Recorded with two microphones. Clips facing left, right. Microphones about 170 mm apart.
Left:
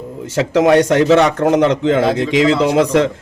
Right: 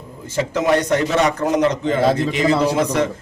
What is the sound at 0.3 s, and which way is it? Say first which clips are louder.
A man's voice: left 6 dB; 90° left.